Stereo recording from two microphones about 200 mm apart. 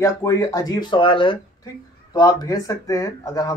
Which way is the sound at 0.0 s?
15° left (ahead or behind).